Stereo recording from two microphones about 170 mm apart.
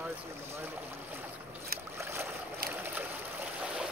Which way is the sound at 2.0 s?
15° right (ahead or behind).